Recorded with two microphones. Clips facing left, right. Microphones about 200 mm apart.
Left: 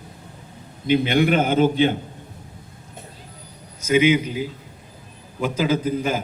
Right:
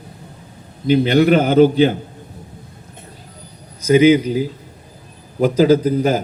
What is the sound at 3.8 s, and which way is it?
A man's voice, 35° right (ahead or behind).